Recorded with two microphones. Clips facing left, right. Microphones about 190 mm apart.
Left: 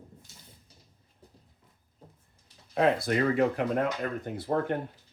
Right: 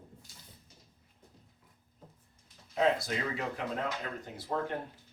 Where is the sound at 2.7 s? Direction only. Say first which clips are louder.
Left 5 dB; 55° left (ahead or behind).